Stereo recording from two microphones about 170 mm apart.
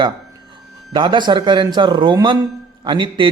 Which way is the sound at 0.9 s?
30° right (ahead or behind).